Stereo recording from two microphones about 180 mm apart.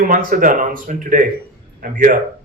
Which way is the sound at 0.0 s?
50° right (ahead or behind).